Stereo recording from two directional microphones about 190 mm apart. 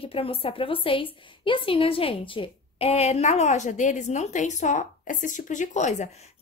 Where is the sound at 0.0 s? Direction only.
30° left (ahead or behind).